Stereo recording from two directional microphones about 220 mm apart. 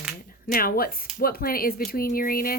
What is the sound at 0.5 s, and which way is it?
Speech, 40° left (ahead or behind).